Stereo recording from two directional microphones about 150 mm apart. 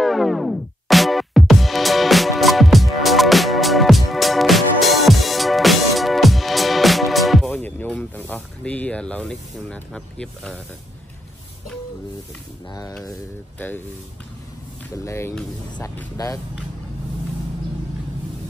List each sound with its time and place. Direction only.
0.0 s music: centre (ahead or behind)
7.6 s a sound: 10° left (ahead or behind)
15.0 s speech: 20° left (ahead or behind)